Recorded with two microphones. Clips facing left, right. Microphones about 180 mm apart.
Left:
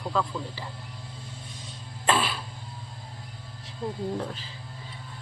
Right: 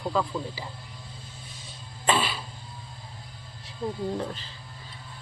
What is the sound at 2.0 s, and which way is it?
Cough, centre (ahead or behind).